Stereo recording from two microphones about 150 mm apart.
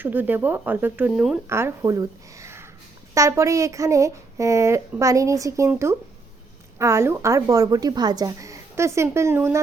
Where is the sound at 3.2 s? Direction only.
20° right (ahead or behind).